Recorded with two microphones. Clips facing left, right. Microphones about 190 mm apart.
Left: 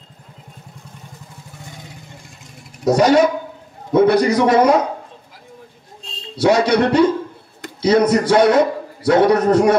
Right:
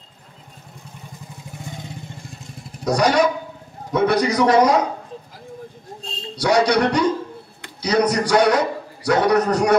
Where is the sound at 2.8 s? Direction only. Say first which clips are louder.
Left 5 dB; 25° left (ahead or behind).